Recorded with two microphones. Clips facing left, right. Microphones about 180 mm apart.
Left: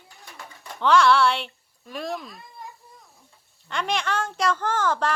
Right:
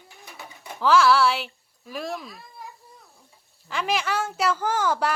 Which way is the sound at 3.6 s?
5° right (ahead or behind).